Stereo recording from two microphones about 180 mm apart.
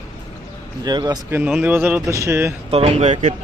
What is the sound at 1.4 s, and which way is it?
Speech, 5° right (ahead or behind).